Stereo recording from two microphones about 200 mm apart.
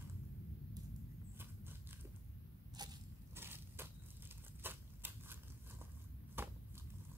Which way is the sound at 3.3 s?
10° right (ahead or behind).